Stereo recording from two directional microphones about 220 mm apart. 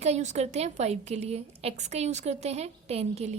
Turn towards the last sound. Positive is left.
turn(degrees=-30)  # may be behind; listen again after turning